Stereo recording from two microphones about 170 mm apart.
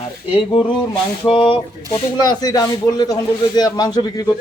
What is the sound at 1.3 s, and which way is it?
A man's voice, 30° left (ahead or behind).